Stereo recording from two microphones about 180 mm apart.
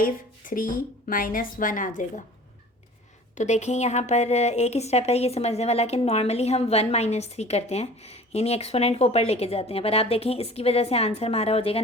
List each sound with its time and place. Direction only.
0.0 s a woman's voice: 50° left (ahead or behind)
3.3 s a woman's voice: 40° left (ahead or behind)